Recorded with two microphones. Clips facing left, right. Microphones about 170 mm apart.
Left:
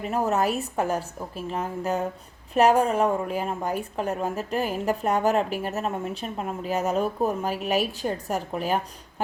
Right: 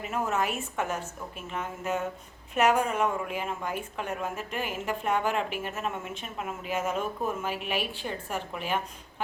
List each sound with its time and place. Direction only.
0.0 s a woman's voice: 35° left (ahead or behind)